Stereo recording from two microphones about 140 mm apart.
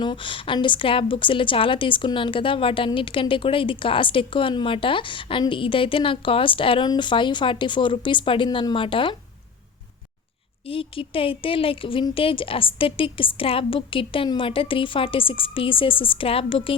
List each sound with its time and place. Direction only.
0.0 s a woman's voice: 35° left (ahead or behind)
10.7 s a woman's voice: 40° left (ahead or behind)